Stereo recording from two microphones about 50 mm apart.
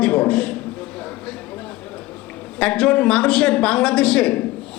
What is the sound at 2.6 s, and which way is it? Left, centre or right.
A woman's voice, centre.